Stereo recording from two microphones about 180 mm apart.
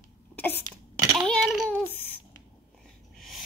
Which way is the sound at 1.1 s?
Centre (ahead or behind).